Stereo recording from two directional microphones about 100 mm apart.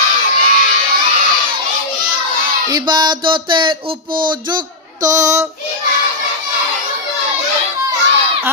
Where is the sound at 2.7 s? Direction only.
45° right (ahead or behind).